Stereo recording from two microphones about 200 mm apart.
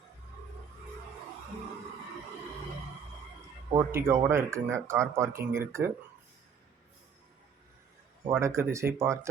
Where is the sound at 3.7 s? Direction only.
15° right (ahead or behind).